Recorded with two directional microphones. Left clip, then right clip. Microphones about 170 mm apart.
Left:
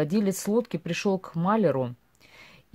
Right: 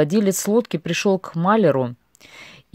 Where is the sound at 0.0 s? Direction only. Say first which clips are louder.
Right 8 dB; 30° right (ahead or behind).